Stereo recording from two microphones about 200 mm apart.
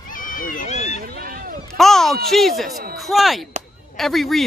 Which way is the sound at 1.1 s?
45° right (ahead or behind).